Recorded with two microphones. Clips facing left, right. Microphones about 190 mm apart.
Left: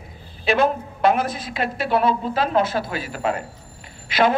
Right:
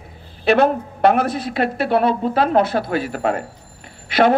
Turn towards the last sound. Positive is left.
turn(degrees=-65)  # may be behind; listen again after turning